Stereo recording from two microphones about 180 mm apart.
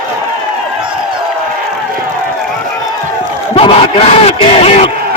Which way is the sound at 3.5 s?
35° left (ahead or behind).